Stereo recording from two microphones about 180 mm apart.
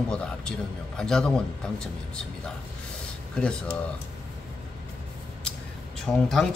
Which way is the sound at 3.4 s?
5° left (ahead or behind).